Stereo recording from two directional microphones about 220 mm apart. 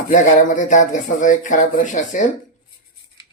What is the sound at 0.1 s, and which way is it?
Speech, 35° left (ahead or behind).